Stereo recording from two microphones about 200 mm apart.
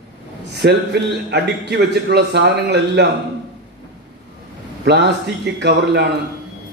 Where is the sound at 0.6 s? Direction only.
55° right (ahead or behind).